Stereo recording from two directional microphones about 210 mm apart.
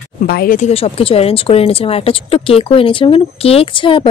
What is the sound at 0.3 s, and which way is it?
A woman's voice, 45° left (ahead or behind).